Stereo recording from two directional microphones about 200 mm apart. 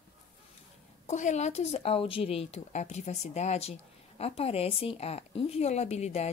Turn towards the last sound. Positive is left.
turn(degrees=35)  # may be behind; listen again after turning